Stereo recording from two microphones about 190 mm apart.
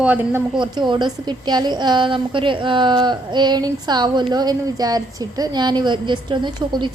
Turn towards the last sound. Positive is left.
turn(degrees=-25)  # may be behind; listen again after turning